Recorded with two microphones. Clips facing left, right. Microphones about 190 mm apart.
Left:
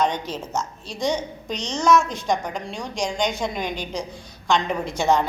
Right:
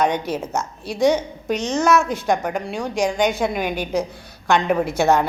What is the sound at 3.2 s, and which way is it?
Speech, 5° right (ahead or behind).